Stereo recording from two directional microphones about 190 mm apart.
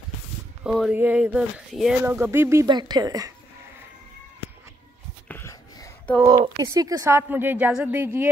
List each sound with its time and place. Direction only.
0.7 s speech: 5° right (ahead or behind)
2.0 s speech: 10° right (ahead or behind)
5.3 s a sound: 15° left (ahead or behind)
6.2 s speech: 20° right (ahead or behind)